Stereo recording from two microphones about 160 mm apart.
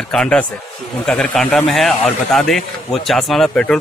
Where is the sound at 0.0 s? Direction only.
5° left (ahead or behind).